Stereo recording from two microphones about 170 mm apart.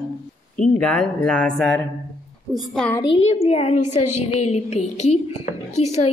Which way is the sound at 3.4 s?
40° left (ahead or behind).